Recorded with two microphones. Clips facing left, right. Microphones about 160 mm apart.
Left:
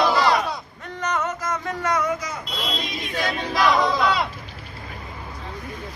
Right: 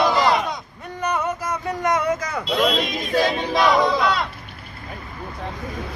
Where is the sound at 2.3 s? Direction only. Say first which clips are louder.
Right 9 dB; 70° right (ahead or behind).